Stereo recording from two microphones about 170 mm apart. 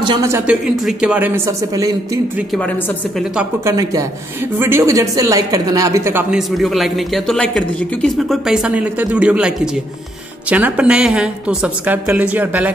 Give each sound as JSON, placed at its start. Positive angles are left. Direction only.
{"t": 0.0, "sound": "speech", "side_deg": -25}
{"t": 0.3, "sound": "a woman's voice", "side_deg": -5}
{"t": 3.6, "sound": "a woman's voice", "side_deg": -20}
{"t": 6.3, "sound": "speech", "side_deg": 0}
{"t": 10.5, "sound": "a woman's voice", "side_deg": -10}